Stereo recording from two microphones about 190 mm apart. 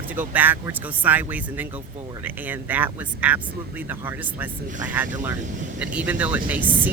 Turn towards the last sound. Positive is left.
turn(degrees=-10)  # may be behind; listen again after turning